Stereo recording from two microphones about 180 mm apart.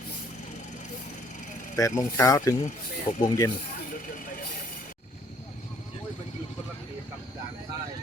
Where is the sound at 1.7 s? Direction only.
15° left (ahead or behind).